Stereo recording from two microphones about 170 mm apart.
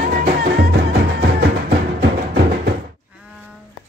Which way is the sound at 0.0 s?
60° right (ahead or behind).